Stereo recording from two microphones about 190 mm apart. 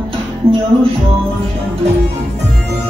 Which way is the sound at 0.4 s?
30° right (ahead or behind).